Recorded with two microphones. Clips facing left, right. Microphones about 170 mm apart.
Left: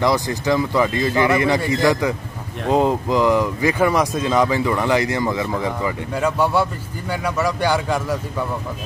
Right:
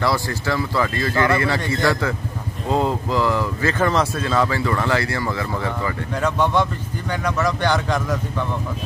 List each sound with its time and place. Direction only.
0.0 s speech: 15° left (ahead or behind)